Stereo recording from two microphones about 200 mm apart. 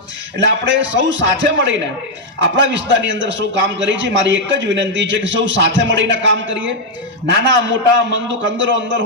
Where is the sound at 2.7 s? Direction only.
65° right (ahead or behind).